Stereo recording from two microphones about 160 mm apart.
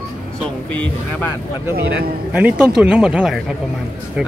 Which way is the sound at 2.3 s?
10° right (ahead or behind).